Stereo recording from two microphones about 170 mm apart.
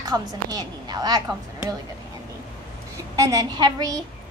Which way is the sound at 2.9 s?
20° right (ahead or behind).